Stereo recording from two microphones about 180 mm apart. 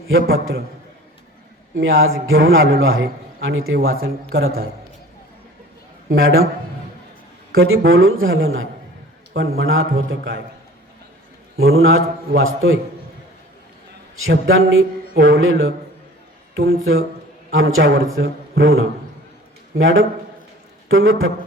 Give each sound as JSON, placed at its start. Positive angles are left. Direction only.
{"t": 0.1, "sound": "a man's voice", "side_deg": -90}
{"t": 1.7, "sound": "a man's voice", "side_deg": -90}
{"t": 6.1, "sound": "a man's voice", "side_deg": -90}
{"t": 7.6, "sound": "a man's voice", "side_deg": -90}
{"t": 9.3, "sound": "a man's voice", "side_deg": -75}
{"t": 11.6, "sound": "a man's voice", "side_deg": -90}
{"t": 14.3, "sound": "a man's voice", "side_deg": -90}